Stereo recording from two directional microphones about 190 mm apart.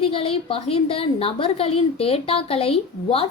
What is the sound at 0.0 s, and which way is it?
A woman's voice, 30° left (ahead or behind).